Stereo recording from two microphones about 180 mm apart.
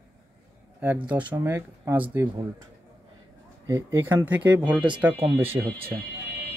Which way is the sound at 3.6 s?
15° right (ahead or behind).